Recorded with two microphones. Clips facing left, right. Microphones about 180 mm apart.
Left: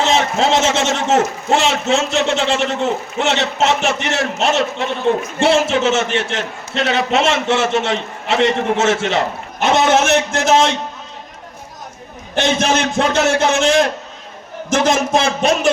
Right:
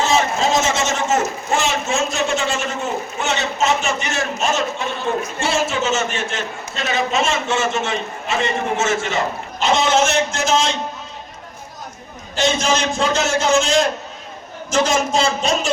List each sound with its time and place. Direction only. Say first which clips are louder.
0.2 s a man's voice: left 3 dB; 70° left (ahead or behind)
12.3 s a man's voice: left 2 dB; 60° left (ahead or behind)